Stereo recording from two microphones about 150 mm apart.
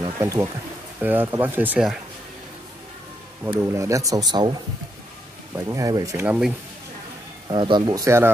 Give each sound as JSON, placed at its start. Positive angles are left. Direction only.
{"t": 0.0, "sound": "speech", "side_deg": -20}
{"t": 3.5, "sound": "speech", "side_deg": -20}
{"t": 5.7, "sound": "speech", "side_deg": -20}
{"t": 6.2, "sound": "speech", "side_deg": -10}
{"t": 7.4, "sound": "speech", "side_deg": -30}